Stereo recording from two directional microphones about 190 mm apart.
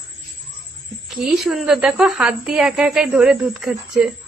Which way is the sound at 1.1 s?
Centre (ahead or behind).